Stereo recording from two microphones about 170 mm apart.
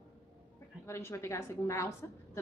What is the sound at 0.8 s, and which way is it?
A woman's voice, 15° left (ahead or behind).